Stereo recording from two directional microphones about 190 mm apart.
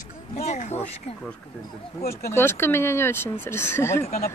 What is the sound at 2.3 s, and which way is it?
Speech, 10° left (ahead or behind).